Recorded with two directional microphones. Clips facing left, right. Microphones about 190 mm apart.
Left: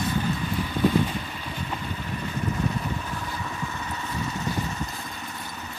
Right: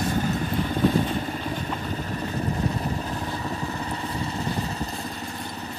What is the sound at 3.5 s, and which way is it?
Vehicle, 35° right (ahead or behind).